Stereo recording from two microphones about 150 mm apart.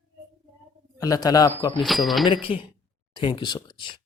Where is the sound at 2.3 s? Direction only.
35° left (ahead or behind).